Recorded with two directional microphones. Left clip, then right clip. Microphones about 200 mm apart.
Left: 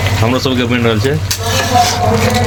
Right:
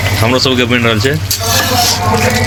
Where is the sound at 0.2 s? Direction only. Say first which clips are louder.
Right 4 dB; 10° left (ahead or behind).